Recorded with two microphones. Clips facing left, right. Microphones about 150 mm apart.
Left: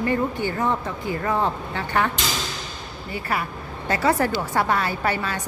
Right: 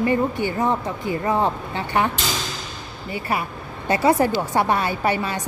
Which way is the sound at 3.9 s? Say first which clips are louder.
Right 3 dB; 20° right (ahead or behind).